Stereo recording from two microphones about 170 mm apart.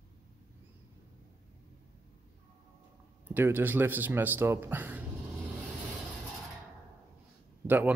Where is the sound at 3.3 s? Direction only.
15° right (ahead or behind).